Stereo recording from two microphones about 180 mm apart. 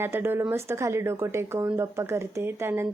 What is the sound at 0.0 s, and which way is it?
Speech, 15° right (ahead or behind).